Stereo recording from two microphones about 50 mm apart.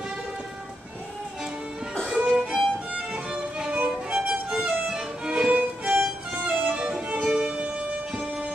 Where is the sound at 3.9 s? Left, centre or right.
Centre.